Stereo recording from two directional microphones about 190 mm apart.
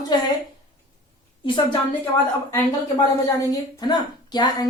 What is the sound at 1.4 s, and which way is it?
Speech, 25° left (ahead or behind).